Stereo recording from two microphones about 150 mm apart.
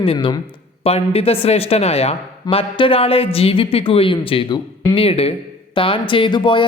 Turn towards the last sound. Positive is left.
turn(degrees=30)  # may be behind; listen again after turning